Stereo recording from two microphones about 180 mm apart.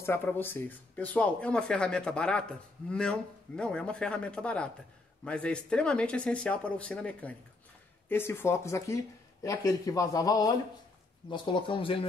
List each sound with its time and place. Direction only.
0.0 s a man's voice: 15° left (ahead or behind); by 12.1 s 30° left (ahead or behind)